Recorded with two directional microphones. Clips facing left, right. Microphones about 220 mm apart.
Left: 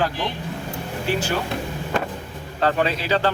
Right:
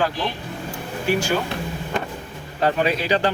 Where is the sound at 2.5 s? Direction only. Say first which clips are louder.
Right 1 dB; 15° right (ahead or behind).